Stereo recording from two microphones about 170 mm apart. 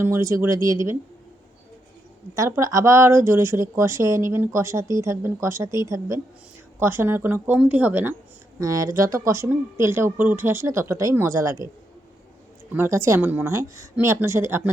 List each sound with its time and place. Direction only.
0.0 s a woman's voice: 15° right (ahead or behind)
2.3 s a woman's voice: 20° right (ahead or behind)
12.7 s a woman's voice: 15° right (ahead or behind)